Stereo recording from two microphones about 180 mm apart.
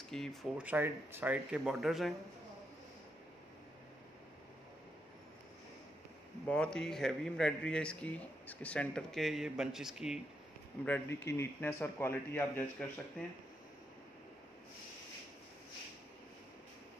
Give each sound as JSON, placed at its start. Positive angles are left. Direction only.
{"t": 0.1, "sound": "speech", "side_deg": 0}
{"t": 6.5, "sound": "speech", "side_deg": 5}
{"t": 10.9, "sound": "a man's voice", "side_deg": 15}